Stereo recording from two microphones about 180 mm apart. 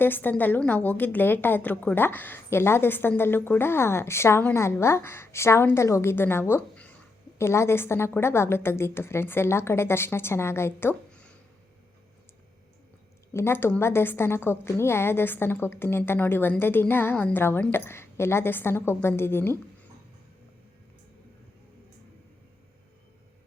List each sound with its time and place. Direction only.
0.0 s a woman's voice: 10° left (ahead or behind)
13.3 s a woman's voice: 15° left (ahead or behind)